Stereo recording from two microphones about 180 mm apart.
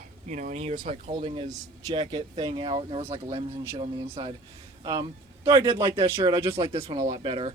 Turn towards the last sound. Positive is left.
turn(degrees=-30)  # may be behind; listen again after turning